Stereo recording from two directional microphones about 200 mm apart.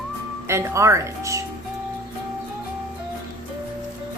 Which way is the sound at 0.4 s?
15° right (ahead or behind).